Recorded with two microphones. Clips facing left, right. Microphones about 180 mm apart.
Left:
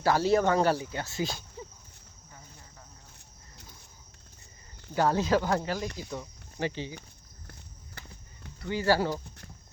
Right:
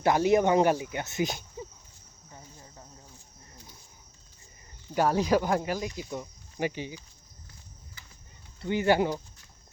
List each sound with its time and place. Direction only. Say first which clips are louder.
0.0 s speech: right 2 dB; 15° right (ahead or behind)
4.9 s speech: right 1 dB; 15° right (ahead or behind)
8.6 s speech: right 2 dB; 20° right (ahead or behind)